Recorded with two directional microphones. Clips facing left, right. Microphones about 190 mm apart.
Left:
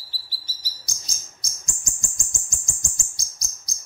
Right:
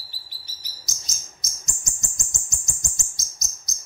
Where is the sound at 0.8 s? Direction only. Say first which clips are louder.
Right 2 dB; 20° right (ahead or behind).